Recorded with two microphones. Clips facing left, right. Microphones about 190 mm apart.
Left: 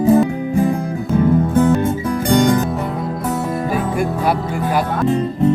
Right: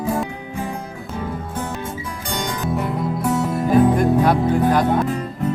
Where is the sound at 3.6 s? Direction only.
10° left (ahead or behind).